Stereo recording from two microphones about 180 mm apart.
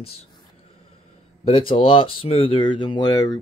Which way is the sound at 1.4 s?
30° left (ahead or behind).